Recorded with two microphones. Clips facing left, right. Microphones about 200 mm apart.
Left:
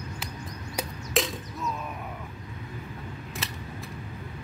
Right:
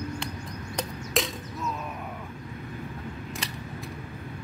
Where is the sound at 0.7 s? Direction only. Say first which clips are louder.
Left 1 dB; centre (ahead or behind).